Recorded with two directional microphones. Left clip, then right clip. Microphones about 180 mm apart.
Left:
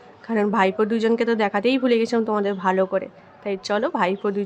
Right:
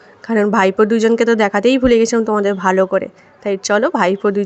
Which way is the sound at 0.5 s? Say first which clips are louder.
Right 7 dB; 30° right (ahead or behind).